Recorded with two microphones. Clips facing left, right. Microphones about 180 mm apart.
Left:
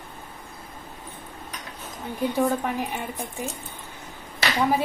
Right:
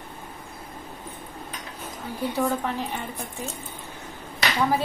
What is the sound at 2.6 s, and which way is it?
Speech, 15° left (ahead or behind).